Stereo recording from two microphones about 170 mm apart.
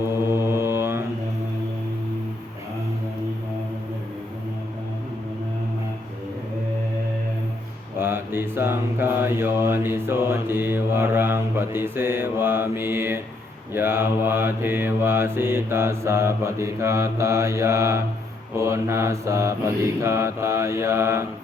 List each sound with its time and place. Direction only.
0.4 s mantra: 15° right (ahead or behind)
7.9 s mantra: 15° right (ahead or behind)